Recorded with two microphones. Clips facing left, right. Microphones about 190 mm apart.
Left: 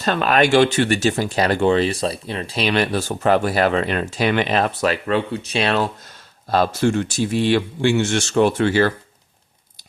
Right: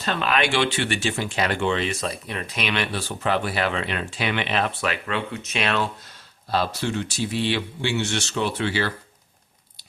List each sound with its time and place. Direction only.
0.0 s speech: 45° left (ahead or behind)
6.5 s speech: 50° left (ahead or behind)